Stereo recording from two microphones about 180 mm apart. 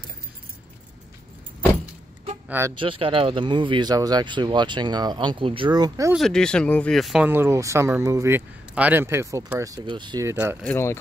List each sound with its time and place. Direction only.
2.4 s speech: 10° right (ahead or behind)
2.7 s speech: 30° right (ahead or behind)
6.1 s speech: 5° left (ahead or behind)
7.2 s a man's voice: 10° right (ahead or behind)
10.3 s a man's voice: 10° right (ahead or behind)
10.6 s speech: 10° left (ahead or behind)